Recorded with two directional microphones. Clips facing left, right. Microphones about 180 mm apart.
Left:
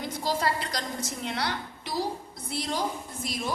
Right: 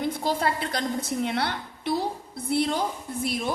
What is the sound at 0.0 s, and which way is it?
A woman's voice, 55° right (ahead or behind).